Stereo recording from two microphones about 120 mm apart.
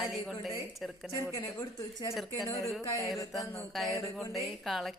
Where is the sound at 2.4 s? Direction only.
30° left (ahead or behind).